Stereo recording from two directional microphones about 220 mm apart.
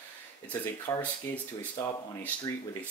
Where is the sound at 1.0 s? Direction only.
10° left (ahead or behind).